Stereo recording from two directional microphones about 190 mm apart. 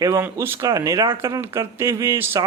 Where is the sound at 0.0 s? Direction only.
15° right (ahead or behind).